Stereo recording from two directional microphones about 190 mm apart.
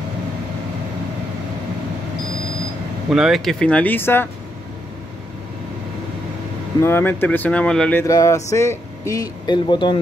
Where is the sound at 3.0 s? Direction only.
5° right (ahead or behind).